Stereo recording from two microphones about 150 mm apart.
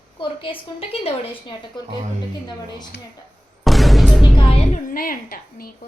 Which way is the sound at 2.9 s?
90° left.